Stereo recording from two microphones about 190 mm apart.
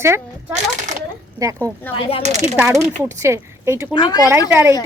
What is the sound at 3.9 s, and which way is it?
Speech, 20° left (ahead or behind).